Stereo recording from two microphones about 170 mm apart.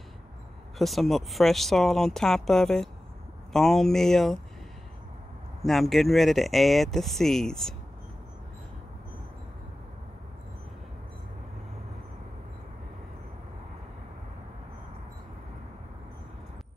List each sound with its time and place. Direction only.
0.7 s speech: centre (ahead or behind)
5.6 s speech: centre (ahead or behind)